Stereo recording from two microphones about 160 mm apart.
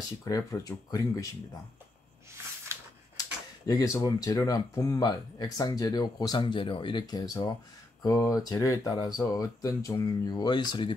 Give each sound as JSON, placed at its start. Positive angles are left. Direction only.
{"t": 0.2, "sound": "speech", "side_deg": 20}
{"t": 2.7, "sound": "typewriter", "side_deg": -15}
{"t": 3.2, "sound": "speech", "side_deg": 25}